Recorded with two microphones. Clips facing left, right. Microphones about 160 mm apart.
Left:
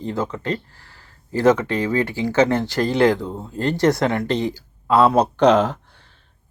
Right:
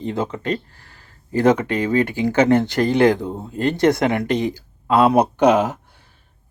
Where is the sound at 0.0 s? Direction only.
20° right (ahead or behind).